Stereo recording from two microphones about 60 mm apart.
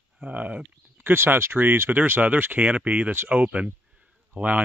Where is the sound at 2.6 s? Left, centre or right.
Right.